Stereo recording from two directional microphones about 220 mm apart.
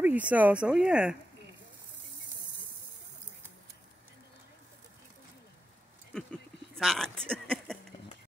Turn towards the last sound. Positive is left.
turn(degrees=5)  # may be behind; listen again after turning